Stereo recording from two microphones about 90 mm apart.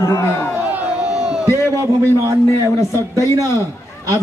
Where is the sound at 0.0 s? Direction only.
35° left (ahead or behind).